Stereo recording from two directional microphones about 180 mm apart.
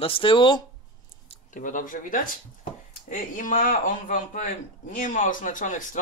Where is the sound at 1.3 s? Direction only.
45° left (ahead or behind).